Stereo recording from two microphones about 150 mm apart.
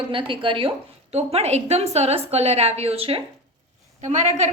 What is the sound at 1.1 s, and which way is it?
A woman's voice, 45° right (ahead or behind).